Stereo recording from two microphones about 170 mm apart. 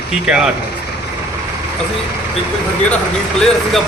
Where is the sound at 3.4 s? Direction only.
Centre (ahead or behind).